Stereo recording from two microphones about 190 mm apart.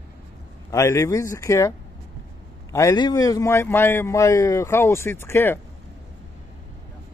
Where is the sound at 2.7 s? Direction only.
20° left (ahead or behind).